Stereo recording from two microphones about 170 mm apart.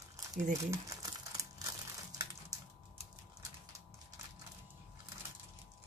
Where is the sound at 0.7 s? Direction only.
20° right (ahead or behind).